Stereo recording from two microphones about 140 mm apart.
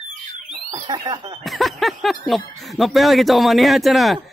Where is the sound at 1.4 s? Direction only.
Centre (ahead or behind).